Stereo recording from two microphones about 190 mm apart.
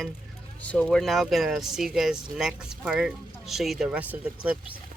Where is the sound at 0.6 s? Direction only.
5° left (ahead or behind).